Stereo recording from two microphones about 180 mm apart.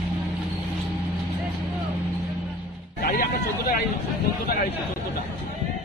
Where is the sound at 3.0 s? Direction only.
50° left (ahead or behind).